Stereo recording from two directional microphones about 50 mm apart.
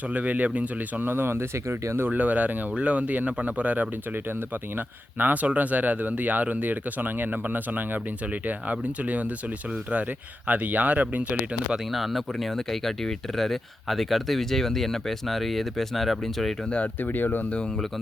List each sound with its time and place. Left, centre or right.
0.1 s speech: right
1.0 s speech: right
2.0 s speech: right
5.1 s speech: right
11.9 s speech: centre
16.6 s speech: left
17.0 s speech: left